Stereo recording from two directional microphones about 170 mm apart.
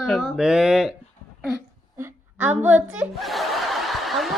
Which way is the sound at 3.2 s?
Centre (ahead or behind).